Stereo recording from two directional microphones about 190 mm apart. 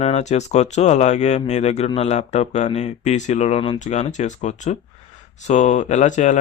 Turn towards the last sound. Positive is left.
turn(degrees=40)  # may be behind; listen again after turning